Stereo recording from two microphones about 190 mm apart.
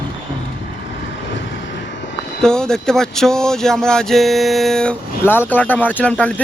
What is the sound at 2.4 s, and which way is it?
Speech, 5° left (ahead or behind).